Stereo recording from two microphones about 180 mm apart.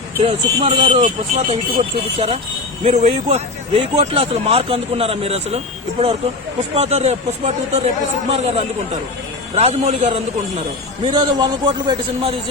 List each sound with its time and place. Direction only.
0.2 s speech: 30° right (ahead or behind)
6.6 s speech: 35° right (ahead or behind)
11.0 s a man's voice: 25° right (ahead or behind)